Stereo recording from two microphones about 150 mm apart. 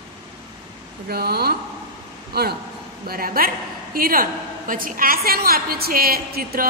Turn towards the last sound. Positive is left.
turn(degrees=-85)